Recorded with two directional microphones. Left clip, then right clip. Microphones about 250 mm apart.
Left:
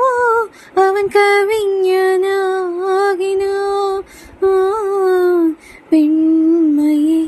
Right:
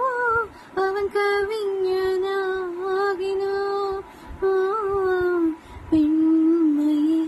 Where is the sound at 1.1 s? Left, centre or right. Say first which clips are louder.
Left 10 dB; left.